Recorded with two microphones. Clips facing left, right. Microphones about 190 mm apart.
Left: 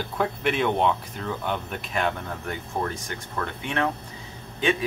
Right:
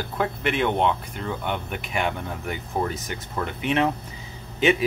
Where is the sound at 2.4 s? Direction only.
15° right (ahead or behind).